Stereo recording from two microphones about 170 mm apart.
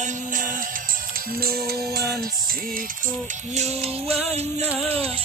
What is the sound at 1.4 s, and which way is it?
Music, 65° right (ahead or behind).